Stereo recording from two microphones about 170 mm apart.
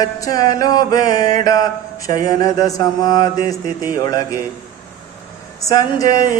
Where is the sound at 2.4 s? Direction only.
20° left (ahead or behind).